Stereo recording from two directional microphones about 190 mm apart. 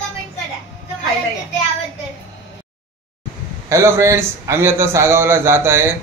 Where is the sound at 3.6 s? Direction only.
15° right (ahead or behind).